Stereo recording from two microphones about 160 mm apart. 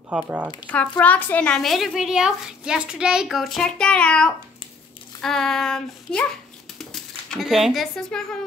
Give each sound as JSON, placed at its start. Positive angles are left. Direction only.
{"t": 0.1, "sound": "speech", "side_deg": -10}
{"t": 0.9, "sound": "a child's voice", "side_deg": 10}